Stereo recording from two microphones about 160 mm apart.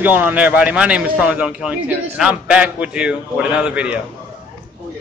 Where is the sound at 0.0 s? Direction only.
10° right (ahead or behind).